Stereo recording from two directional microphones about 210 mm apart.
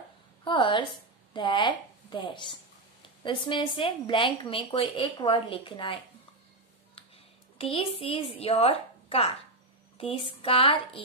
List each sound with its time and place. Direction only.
0.4 s a sound: 20° left (ahead or behind)
1.3 s a woman's voice: 20° left (ahead or behind)
7.5 s a woman's voice: 25° left (ahead or behind)